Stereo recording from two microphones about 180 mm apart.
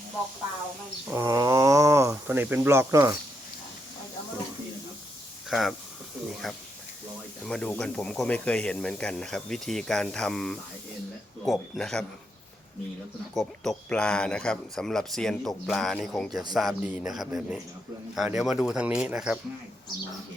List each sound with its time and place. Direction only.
1.1 s speech: 20° right (ahead or behind)
5.5 s speech: centre (ahead or behind)
13.3 s speech: centre (ahead or behind)